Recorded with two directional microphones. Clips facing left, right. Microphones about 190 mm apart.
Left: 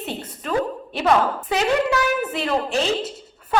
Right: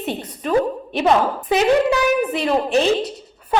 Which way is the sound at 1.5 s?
15° right (ahead or behind).